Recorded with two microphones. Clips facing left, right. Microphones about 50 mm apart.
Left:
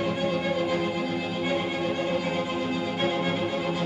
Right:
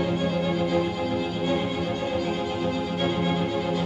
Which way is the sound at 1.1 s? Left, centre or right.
Left.